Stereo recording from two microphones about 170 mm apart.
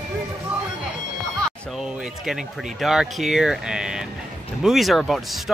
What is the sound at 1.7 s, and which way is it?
Speech, centre (ahead or behind).